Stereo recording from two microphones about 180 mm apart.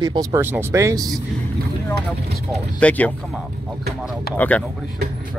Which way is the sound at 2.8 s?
10° left (ahead or behind).